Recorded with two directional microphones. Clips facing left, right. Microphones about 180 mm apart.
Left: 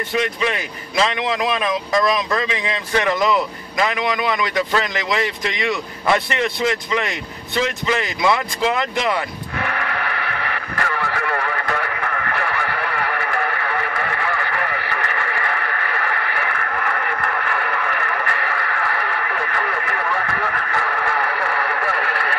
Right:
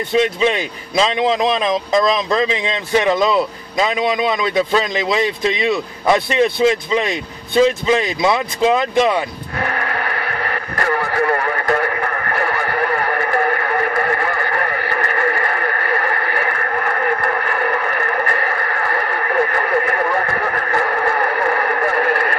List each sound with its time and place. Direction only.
0.1 s speech: 25° right (ahead or behind)
9.6 s radio: 40° right (ahead or behind)